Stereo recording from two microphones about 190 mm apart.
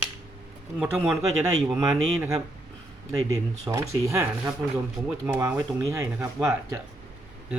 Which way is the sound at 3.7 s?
15° right (ahead or behind).